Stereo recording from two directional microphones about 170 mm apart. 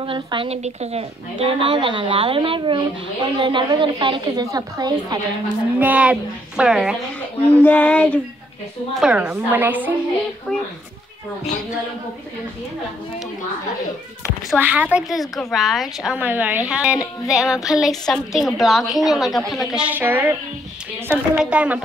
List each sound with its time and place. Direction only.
0.0 s a woman's voice: 30° right (ahead or behind)
5.8 s a woman's voice: 10° right (ahead or behind)
7.4 s a sound: 10° left (ahead or behind)
8.9 s a woman's voice: 5° right (ahead or behind)
14.5 s a woman's voice: 10° right (ahead or behind)